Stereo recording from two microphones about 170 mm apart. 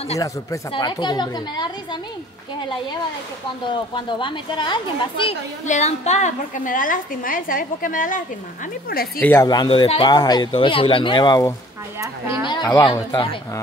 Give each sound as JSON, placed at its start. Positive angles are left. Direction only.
{"t": 0.2, "sound": "speech", "side_deg": 25}
{"t": 3.6, "sound": "speech", "side_deg": 30}
{"t": 5.7, "sound": "a woman's voice", "side_deg": 40}
{"t": 9.2, "sound": "speech", "side_deg": 10}
{"t": 9.5, "sound": "speech", "side_deg": 25}
{"t": 12.0, "sound": "speech", "side_deg": -20}
{"t": 12.4, "sound": "speech", "side_deg": 25}